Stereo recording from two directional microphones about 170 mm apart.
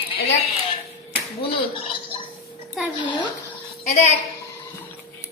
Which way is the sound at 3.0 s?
25° left (ahead or behind).